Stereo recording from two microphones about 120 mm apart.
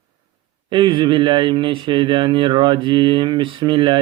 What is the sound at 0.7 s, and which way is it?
Speech, 45° right (ahead or behind).